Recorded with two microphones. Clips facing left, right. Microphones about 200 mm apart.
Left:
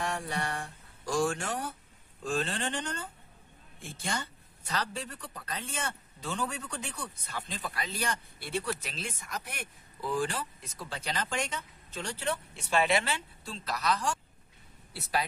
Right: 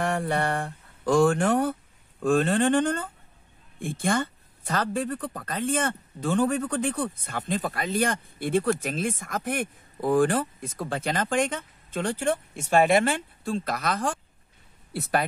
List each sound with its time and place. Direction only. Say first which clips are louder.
0.0 s a woman's voice: right 8 dB; 60° right (ahead or behind)